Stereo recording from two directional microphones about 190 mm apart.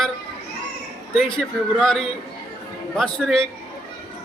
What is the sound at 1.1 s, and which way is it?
Speech, 5° left (ahead or behind).